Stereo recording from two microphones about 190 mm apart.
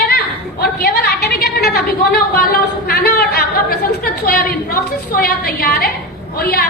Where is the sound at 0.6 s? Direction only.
60° left (ahead or behind).